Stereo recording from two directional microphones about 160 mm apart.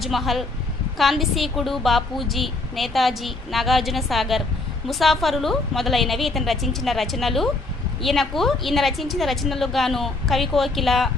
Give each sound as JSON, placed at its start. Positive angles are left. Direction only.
{"t": 0.0, "sound": "a woman's voice", "side_deg": 0}